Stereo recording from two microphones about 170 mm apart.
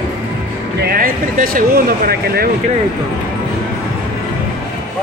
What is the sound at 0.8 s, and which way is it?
Speech, 60° right (ahead or behind).